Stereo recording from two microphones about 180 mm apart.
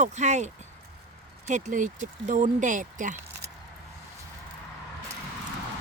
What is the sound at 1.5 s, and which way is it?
Speech, 40° right (ahead or behind).